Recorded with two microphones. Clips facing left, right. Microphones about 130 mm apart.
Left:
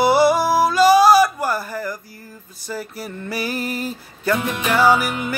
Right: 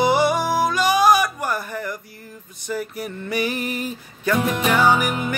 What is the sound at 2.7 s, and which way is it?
Music, 30° left (ahead or behind).